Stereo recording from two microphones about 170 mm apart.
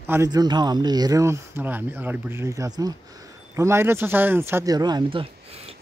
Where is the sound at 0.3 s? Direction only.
25° right (ahead or behind).